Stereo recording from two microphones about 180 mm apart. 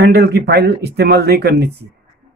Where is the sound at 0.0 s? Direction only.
65° right (ahead or behind).